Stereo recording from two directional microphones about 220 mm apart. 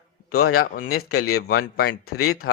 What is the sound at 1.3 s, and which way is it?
Speech, 45° left (ahead or behind).